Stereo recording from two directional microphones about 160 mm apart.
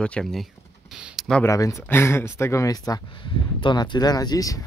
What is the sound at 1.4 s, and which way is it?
Speech, 20° left (ahead or behind).